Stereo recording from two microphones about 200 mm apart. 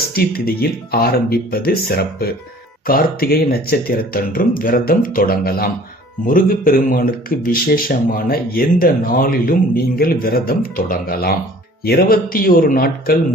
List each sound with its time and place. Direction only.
0.1 s speech: 50° left (ahead or behind)